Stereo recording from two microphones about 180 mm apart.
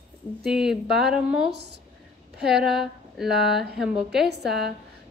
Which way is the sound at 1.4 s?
70° right (ahead or behind).